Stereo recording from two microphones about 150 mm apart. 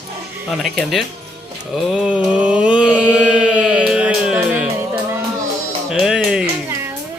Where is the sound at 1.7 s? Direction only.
5° right (ahead or behind).